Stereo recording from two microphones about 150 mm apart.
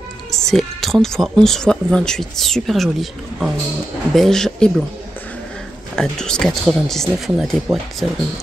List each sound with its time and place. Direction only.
0.3 s speech: centre (ahead or behind)
5.9 s speech: 5° left (ahead or behind)